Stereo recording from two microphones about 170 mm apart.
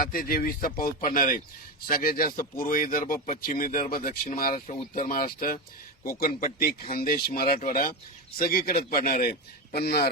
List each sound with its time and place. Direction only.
0.0 s speech: 55° left (ahead or behind)
9.7 s speech: 70° left (ahead or behind)